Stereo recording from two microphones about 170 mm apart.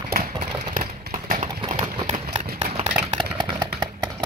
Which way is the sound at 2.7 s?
40° right (ahead or behind).